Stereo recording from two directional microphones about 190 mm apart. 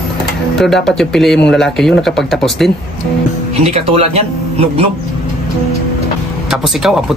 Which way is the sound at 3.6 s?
35° right (ahead or behind).